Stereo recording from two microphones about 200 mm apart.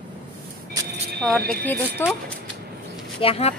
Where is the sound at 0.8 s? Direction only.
15° right (ahead or behind).